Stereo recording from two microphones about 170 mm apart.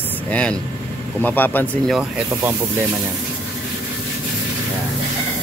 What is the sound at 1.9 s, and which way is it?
Speech, 5° right (ahead or behind).